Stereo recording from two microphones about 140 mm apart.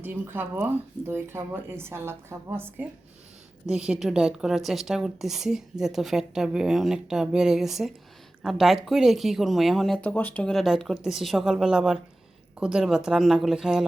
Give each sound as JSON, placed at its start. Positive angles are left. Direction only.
{"t": 0.0, "sound": "speech", "side_deg": -15}
{"t": 3.7, "sound": "a woman's voice", "side_deg": -5}